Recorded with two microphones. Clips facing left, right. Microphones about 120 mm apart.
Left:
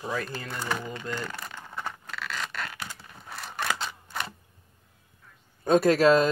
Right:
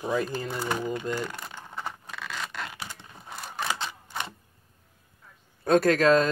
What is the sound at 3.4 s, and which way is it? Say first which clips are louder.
Scissors: left 1 dB; 10° right (ahead or behind).